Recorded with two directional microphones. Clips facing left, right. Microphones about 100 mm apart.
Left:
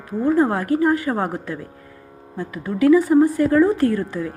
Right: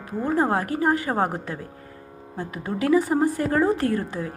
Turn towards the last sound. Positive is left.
turn(degrees=-35)  # may be behind; listen again after turning